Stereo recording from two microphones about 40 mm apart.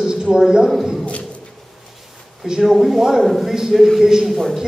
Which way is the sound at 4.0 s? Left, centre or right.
Centre.